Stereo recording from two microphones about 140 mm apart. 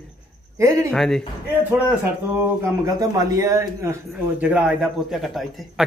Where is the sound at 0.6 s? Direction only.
20° right (ahead or behind).